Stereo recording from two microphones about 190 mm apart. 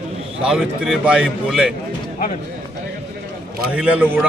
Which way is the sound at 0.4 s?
5° right (ahead or behind).